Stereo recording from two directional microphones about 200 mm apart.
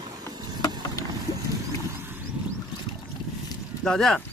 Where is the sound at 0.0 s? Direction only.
20° right (ahead or behind).